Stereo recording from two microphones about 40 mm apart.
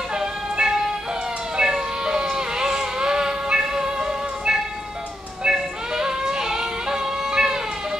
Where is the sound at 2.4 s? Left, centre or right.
Centre.